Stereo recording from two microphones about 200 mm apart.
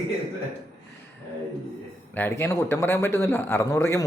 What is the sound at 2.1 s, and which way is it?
A man's voice, 10° left (ahead or behind).